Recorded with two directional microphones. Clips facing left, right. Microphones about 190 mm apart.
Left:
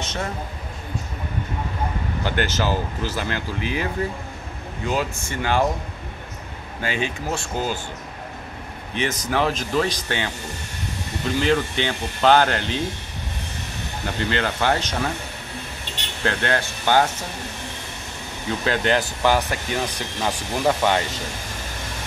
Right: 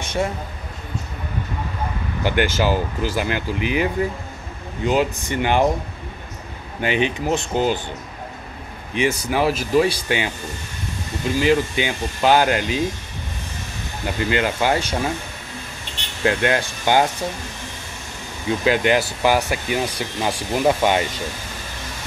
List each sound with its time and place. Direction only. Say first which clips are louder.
0.0 s a sound: right 5 dB; 10° right (ahead or behind)
2.2 s speech: right 4 dB; 10° right (ahead or behind)
6.8 s speech: right 5 dB; 20° right (ahead or behind)
8.9 s speech: right 3 dB; 10° right (ahead or behind)
11.3 s speech: right 3 dB; 10° right (ahead or behind)
14.0 s speech: right 3 dB; 10° right (ahead or behind)
16.3 s speech: right 4 dB; 15° right (ahead or behind)
18.6 s speech: right 3 dB; 10° right (ahead or behind)